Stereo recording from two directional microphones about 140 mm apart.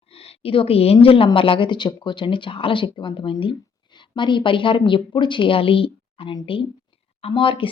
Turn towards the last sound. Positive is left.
turn(degrees=35)  # may be behind; listen again after turning